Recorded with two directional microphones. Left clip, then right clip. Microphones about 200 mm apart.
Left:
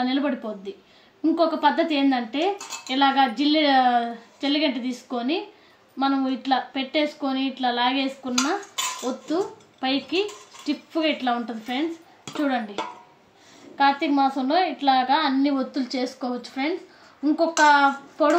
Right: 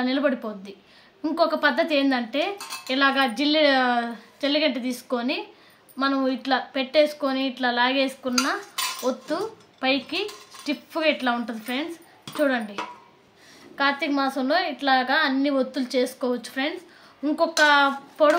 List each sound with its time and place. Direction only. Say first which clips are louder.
0.0 s a woman's voice: right 1 dB; 45° right (ahead or behind)
1.3 s a woman's voice: even; 45° right (ahead or behind)
13.7 s a woman's voice: left 3 dB; 50° right (ahead or behind)